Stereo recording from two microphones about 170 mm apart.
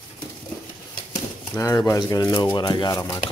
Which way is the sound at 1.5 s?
20° left (ahead or behind).